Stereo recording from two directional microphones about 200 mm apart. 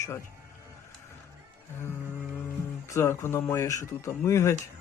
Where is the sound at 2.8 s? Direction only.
15° left (ahead or behind).